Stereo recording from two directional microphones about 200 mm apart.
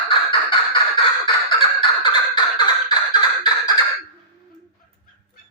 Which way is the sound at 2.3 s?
25° left (ahead or behind).